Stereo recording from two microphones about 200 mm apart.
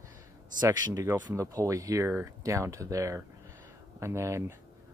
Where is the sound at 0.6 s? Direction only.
20° right (ahead or behind).